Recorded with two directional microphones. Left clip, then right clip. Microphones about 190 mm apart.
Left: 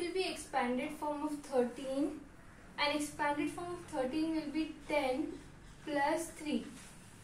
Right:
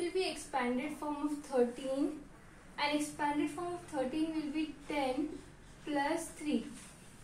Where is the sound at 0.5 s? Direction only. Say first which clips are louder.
Left 1 dB; 10° right (ahead or behind).